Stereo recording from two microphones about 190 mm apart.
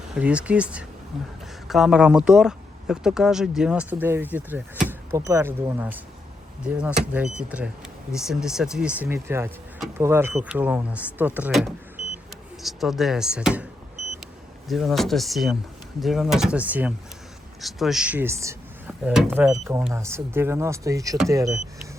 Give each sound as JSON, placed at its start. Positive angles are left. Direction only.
{"t": 0.1, "sound": "speech", "side_deg": -5}
{"t": 14.7, "sound": "speech", "side_deg": 0}
{"t": 19.0, "sound": "speech", "side_deg": -5}